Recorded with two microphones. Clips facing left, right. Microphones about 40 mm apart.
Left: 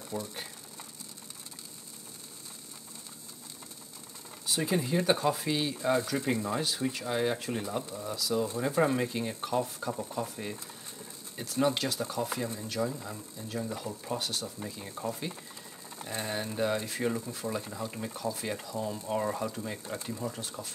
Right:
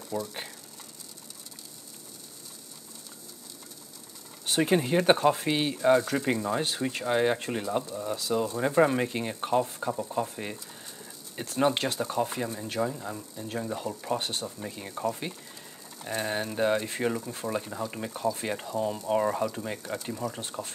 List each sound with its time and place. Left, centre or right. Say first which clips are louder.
0.1 s speech: right 4 dB; right
4.5 s speech: right 5 dB; right
6.6 s speech: right 2 dB; right
16.4 s speech: right 4 dB; right
17.5 s speech: right 4 dB; right
18.2 s speech: right 6 dB; right
19.8 s speech: right 3 dB; right